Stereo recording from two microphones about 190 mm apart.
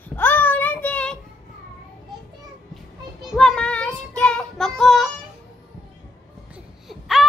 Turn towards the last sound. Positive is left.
turn(degrees=0)  # may be behind; listen again after turning